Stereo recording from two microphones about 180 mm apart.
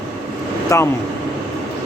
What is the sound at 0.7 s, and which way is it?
Speech, 15° left (ahead or behind).